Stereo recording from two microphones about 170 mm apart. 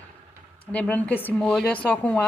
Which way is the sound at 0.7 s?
10° left (ahead or behind).